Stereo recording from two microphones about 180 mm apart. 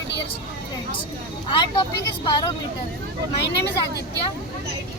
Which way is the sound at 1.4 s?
25° left (ahead or behind).